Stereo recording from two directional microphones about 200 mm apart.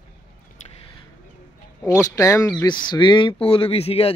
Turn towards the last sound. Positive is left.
turn(degrees=30)  # may be behind; listen again after turning